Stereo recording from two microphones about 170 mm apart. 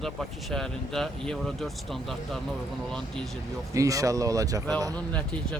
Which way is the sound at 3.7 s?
20° right (ahead or behind).